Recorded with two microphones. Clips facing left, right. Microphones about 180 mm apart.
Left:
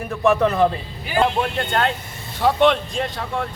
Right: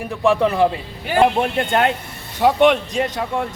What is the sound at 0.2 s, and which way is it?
A man's voice, 10° right (ahead or behind).